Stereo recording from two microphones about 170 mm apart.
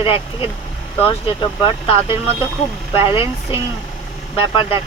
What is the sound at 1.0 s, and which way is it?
Speech, 30° left (ahead or behind).